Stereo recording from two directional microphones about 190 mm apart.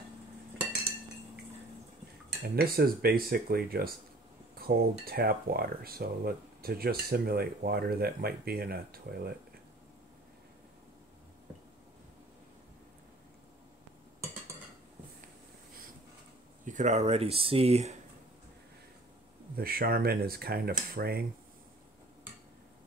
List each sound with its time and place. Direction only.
2.4 s speech: 55° right (ahead or behind)
16.6 s speech: 40° right (ahead or behind)
19.5 s speech: 50° right (ahead or behind)